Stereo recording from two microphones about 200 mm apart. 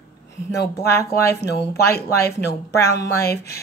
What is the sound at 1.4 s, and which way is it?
Speech, 55° left (ahead or behind).